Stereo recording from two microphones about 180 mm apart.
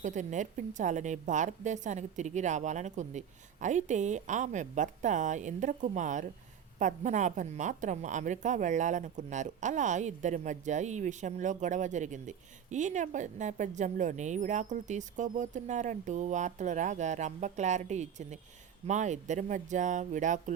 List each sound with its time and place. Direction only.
0.0 s a woman's voice: 45° right (ahead or behind)